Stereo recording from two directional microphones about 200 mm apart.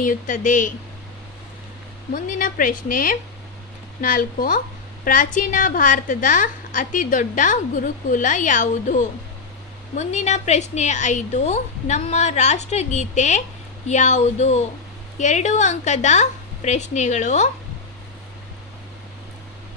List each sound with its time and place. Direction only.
0.0 s a woman's voice: 40° left (ahead or behind)
2.1 s a woman's voice: 45° left (ahead or behind)